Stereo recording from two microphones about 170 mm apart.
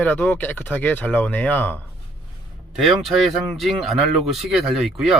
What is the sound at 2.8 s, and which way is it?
Speech, centre (ahead or behind).